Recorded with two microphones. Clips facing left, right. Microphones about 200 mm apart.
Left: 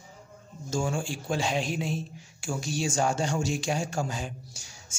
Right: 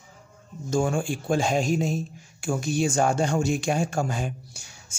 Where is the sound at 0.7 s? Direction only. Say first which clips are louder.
Right 5 dB; 55° right (ahead or behind).